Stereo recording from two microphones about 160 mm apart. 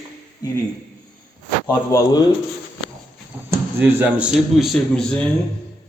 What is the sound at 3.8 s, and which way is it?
Speech, 15° right (ahead or behind).